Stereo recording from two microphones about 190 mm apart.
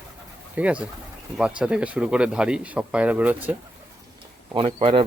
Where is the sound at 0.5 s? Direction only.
5° right (ahead or behind).